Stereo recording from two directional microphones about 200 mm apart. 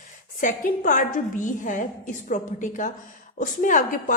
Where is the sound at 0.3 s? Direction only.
40° left (ahead or behind).